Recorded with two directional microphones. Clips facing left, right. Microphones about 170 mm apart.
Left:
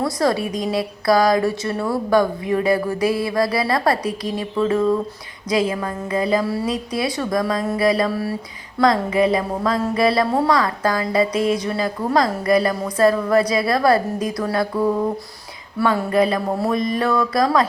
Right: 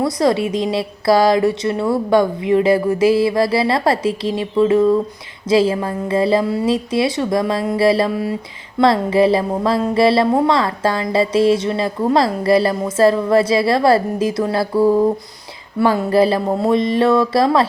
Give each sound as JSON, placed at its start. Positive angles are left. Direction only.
{"t": 0.0, "sound": "speech", "side_deg": -25}
{"t": 5.5, "sound": "speech", "side_deg": -30}
{"t": 8.8, "sound": "speech", "side_deg": -30}
{"t": 14.8, "sound": "a sound", "side_deg": -5}
{"t": 15.8, "sound": "speech", "side_deg": -30}